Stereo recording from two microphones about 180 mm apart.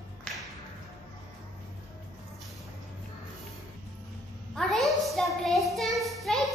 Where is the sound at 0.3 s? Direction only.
5° left (ahead or behind).